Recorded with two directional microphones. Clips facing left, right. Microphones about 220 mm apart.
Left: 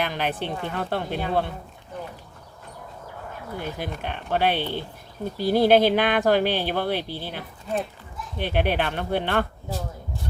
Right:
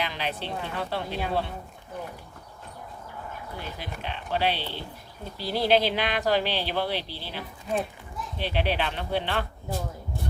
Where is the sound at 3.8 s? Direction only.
50° left (ahead or behind).